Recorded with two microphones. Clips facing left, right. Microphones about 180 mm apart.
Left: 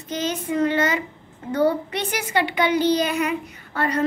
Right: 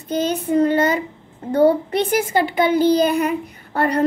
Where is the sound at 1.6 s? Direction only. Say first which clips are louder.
Right 7 dB; 50° right (ahead or behind).